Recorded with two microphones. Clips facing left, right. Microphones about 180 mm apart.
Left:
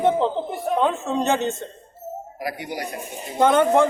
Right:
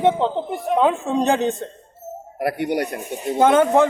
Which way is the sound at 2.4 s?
60° right (ahead or behind).